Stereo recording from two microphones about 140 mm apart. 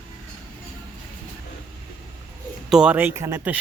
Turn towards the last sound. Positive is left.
turn(degrees=-15)  # may be behind; listen again after turning